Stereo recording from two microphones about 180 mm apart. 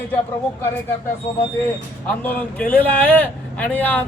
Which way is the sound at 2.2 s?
10° left (ahead or behind).